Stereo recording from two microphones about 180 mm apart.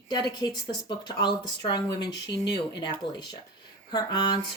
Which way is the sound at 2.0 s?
70° left (ahead or behind).